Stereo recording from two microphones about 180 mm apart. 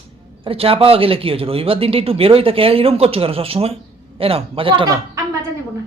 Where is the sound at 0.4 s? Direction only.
30° right (ahead or behind).